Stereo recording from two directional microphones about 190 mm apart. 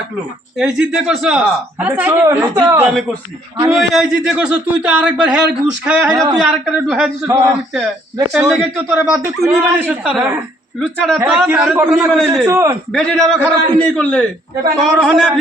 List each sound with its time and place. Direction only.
0.5 s speech: 5° right (ahead or behind)
3.8 s speech: centre (ahead or behind)
7.3 s speech: 15° right (ahead or behind)
8.3 s speech: centre (ahead or behind)
12.5 s speech: 15° right (ahead or behind)
12.9 s a man's voice: 5° left (ahead or behind)